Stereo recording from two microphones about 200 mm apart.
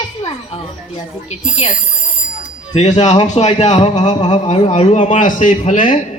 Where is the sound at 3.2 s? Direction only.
35° left (ahead or behind).